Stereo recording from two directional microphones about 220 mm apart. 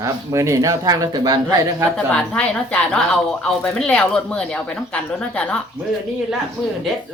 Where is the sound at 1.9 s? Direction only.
5° left (ahead or behind).